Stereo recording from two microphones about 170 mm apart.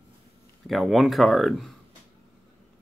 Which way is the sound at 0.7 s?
Centre (ahead or behind).